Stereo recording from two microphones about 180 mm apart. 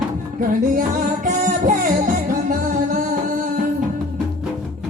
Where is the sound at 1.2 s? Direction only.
45° right (ahead or behind).